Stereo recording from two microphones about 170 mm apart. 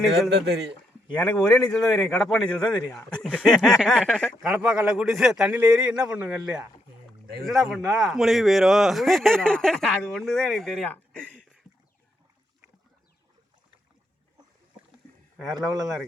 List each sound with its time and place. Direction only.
0.3 s speech: 85° right
1.2 s speech: 5° left (ahead or behind)
4.5 s speech: 5° right (ahead or behind)